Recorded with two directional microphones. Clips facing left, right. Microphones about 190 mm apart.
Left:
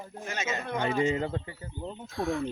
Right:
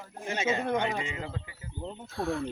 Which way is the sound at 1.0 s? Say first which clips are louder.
Left 9 dB; 35° left (ahead or behind).